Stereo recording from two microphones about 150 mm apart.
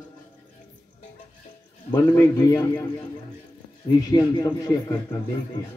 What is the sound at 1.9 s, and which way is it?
Music, 25° left (ahead or behind).